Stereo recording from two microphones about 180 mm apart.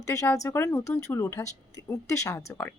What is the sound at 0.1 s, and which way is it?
Speech, 20° left (ahead or behind).